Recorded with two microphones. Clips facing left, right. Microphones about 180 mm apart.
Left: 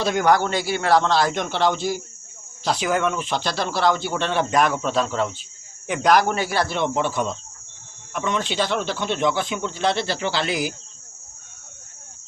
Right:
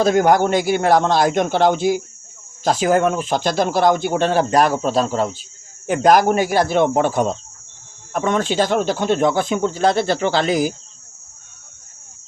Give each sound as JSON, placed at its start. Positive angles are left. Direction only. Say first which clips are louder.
{"t": 0.0, "sound": "speech", "louder": "right 5 dB", "side_deg": -45}